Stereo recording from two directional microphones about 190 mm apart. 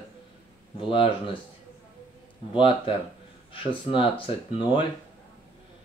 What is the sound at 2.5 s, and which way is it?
Speech, 25° left (ahead or behind).